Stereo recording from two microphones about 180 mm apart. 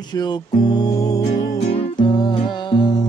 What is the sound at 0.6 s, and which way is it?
Music, 20° left (ahead or behind).